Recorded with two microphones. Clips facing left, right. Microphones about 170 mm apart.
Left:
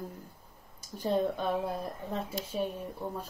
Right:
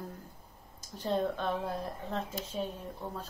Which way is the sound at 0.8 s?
10° left (ahead or behind).